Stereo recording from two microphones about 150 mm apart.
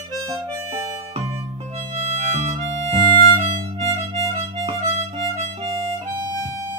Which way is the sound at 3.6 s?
40° right (ahead or behind).